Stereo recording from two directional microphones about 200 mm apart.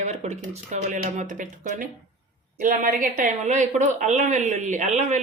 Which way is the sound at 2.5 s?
40° right (ahead or behind).